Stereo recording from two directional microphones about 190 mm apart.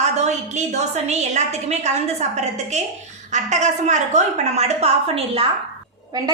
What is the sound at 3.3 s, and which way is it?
A woman's voice, 40° right (ahead or behind).